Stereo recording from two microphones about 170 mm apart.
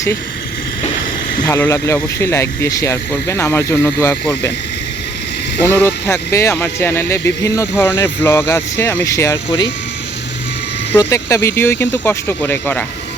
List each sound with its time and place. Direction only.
1.5 s speech: 15° left (ahead or behind)
5.6 s speech: 15° left (ahead or behind)
10.9 s speech: 15° left (ahead or behind)